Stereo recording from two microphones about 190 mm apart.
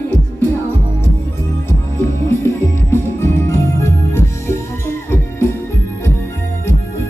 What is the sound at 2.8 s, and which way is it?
Music, 15° left (ahead or behind).